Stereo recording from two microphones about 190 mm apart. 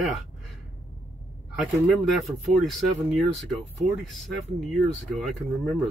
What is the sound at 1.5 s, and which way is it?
Speech, centre (ahead or behind).